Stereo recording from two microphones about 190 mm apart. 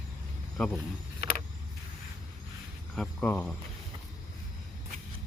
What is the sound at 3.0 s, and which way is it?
Speech, 5° left (ahead or behind).